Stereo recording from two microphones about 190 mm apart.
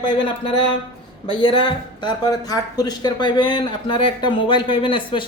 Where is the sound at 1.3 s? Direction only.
25° left (ahead or behind).